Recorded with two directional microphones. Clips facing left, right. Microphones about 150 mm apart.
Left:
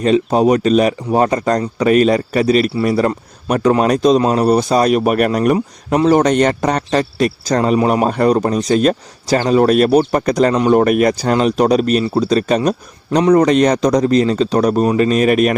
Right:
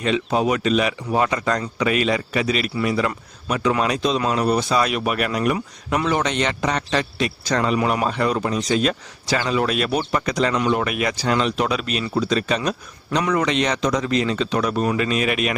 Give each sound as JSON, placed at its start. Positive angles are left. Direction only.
{"t": 0.0, "sound": "a man's voice", "side_deg": 40}